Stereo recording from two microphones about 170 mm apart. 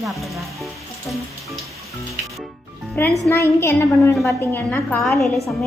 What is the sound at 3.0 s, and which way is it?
A woman's voice, 10° left (ahead or behind).